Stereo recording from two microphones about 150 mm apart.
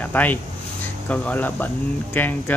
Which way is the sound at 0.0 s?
10° left (ahead or behind).